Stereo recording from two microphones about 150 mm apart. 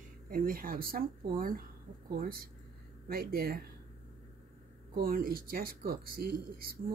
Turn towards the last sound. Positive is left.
turn(degrees=-90)